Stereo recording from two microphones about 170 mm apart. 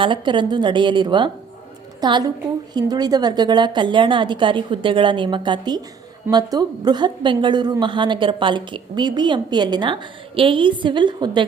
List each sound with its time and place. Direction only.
0.0 s a woman's voice: 30° right (ahead or behind)